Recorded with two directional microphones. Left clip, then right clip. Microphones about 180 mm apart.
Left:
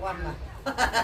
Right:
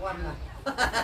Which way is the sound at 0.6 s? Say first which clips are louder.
Left 2 dB; 15° left (ahead or behind).